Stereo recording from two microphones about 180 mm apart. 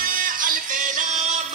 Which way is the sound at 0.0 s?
50° right (ahead or behind).